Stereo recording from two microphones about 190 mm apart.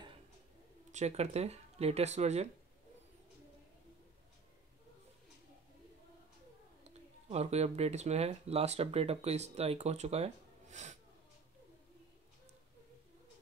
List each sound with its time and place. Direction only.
0.9 s speech: 35° right (ahead or behind)
6.8 s speech: 35° right (ahead or behind)